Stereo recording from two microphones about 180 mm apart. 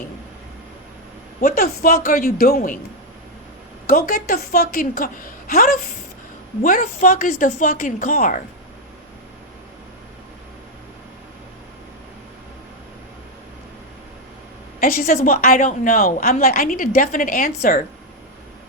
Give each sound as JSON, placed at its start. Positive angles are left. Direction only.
{"t": 1.4, "sound": "a woman's voice", "side_deg": 55}
{"t": 3.8, "sound": "a woman's voice", "side_deg": 55}
{"t": 14.8, "sound": "a woman's voice", "side_deg": 50}